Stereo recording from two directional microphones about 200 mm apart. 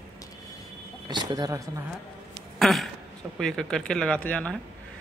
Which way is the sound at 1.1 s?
20° right (ahead or behind).